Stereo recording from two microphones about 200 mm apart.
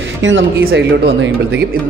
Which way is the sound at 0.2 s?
70° right (ahead or behind).